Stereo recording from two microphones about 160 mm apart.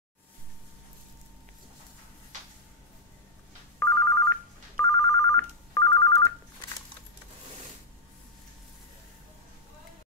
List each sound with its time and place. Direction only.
3.8 s telephone bell ringing: 15° left (ahead or behind)